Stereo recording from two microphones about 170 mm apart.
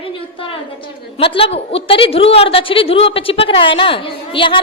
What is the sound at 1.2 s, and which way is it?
A woman's voice, 35° left (ahead or behind).